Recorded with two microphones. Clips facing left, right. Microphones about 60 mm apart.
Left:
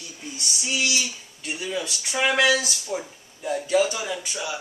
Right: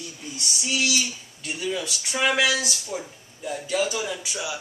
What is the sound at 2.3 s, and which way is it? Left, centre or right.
Speech, centre.